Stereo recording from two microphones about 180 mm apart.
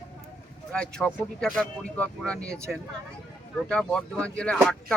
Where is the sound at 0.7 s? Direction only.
5° left (ahead or behind).